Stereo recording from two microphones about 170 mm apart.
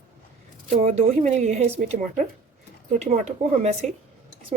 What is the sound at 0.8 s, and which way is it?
Speech, 45° right (ahead or behind).